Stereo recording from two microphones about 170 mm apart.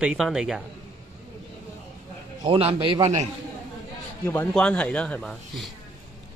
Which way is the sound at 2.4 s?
30° right (ahead or behind).